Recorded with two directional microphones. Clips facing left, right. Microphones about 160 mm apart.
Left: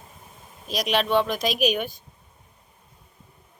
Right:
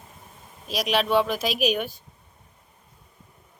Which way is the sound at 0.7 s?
5° right (ahead or behind).